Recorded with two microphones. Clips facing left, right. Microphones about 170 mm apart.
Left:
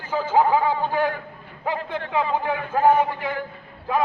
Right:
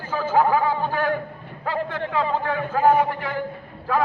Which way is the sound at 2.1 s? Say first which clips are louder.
Left 1 dB; 15° left (ahead or behind).